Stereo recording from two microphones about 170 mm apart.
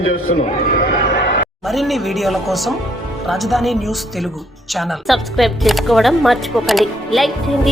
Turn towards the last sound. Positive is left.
turn(degrees=0)  # may be behind; listen again after turning